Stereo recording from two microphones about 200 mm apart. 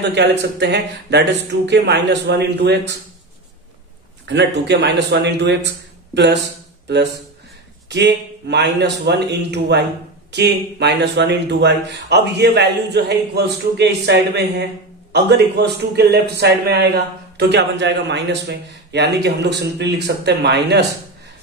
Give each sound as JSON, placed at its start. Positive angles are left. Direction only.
{"t": 0.0, "sound": "a man's voice", "side_deg": -60}
{"t": 4.3, "sound": "a man's voice", "side_deg": -60}
{"t": 7.9, "sound": "a man's voice", "side_deg": -60}